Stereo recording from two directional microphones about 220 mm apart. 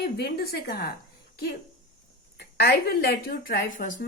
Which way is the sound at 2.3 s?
45° left (ahead or behind).